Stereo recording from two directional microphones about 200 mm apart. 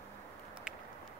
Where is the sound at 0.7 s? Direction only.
5° right (ahead or behind).